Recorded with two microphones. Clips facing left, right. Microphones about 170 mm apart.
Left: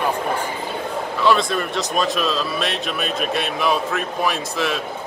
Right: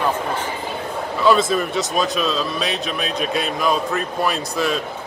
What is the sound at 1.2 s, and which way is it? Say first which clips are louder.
Speech: right 2 dB; centre (ahead or behind).